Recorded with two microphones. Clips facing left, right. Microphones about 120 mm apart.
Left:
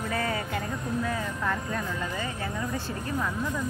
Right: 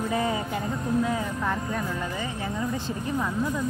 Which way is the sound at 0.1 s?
15° right (ahead or behind).